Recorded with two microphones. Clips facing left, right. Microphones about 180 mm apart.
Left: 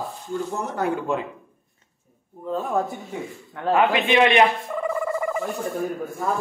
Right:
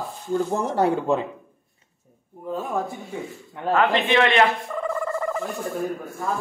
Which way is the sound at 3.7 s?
10° left (ahead or behind).